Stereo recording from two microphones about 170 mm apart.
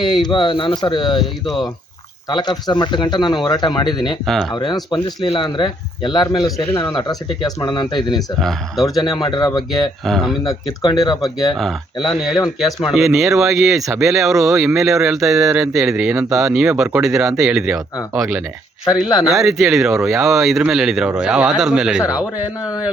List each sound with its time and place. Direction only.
0.0 s speech: 25° left (ahead or behind)
2.3 s speech: 25° left (ahead or behind)
6.7 s speech: 10° left (ahead or behind)
6.9 s speech: 20° left (ahead or behind)
8.4 s speech: centre (ahead or behind)
9.2 s speech: 25° left (ahead or behind)
10.0 s speech: centre (ahead or behind)
10.7 s speech: 25° left (ahead or behind)
11.5 s speech: centre (ahead or behind)